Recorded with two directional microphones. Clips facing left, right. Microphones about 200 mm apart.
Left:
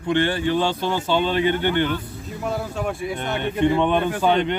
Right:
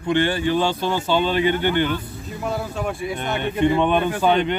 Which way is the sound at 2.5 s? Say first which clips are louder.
Even; 50° left (ahead or behind).